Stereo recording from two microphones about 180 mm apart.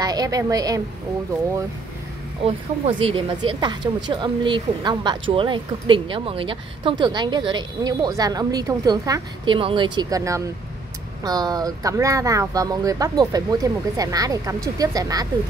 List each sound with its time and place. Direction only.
0.0 s speech: 20° right (ahead or behind)
3.0 s speech: 30° right (ahead or behind)